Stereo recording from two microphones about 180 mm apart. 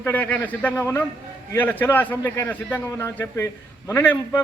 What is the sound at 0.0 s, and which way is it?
A man's voice, 10° left (ahead or behind).